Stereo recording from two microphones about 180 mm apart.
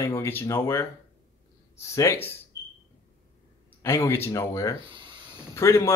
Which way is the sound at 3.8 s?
15° left (ahead or behind).